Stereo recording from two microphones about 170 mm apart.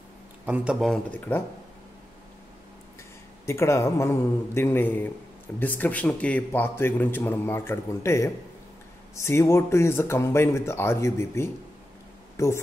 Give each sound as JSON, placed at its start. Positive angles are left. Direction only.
{"t": 0.5, "sound": "speech", "side_deg": -5}
{"t": 3.4, "sound": "a man's voice", "side_deg": 15}